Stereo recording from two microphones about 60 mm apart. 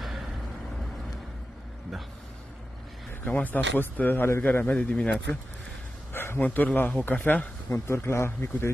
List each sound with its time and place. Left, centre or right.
3.1 s a man's voice: left
6.1 s a man's voice: left
7.7 s a man's voice: left